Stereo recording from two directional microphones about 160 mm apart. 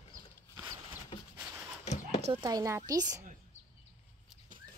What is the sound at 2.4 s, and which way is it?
Speech, 20° right (ahead or behind).